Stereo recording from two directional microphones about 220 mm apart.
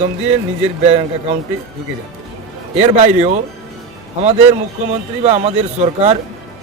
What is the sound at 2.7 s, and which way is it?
Speech, 30° right (ahead or behind).